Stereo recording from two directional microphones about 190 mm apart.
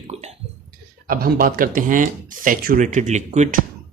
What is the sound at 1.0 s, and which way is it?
Speech, 50° right (ahead or behind).